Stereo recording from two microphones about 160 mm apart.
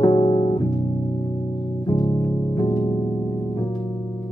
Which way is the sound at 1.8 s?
25° left (ahead or behind).